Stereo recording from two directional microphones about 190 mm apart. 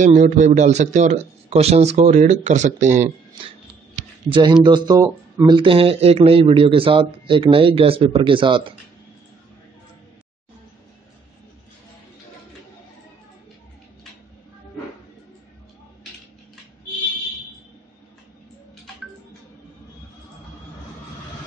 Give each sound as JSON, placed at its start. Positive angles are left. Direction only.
{"t": 0.0, "sound": "speech", "side_deg": -40}
{"t": 4.3, "sound": "speech", "side_deg": -25}